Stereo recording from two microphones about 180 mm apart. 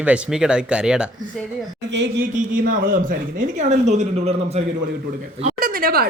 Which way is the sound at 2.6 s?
50° right (ahead or behind).